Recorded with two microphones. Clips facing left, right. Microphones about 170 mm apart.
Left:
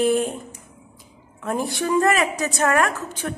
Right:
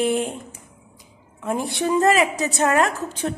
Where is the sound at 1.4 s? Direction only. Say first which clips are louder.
Even; 20° right (ahead or behind).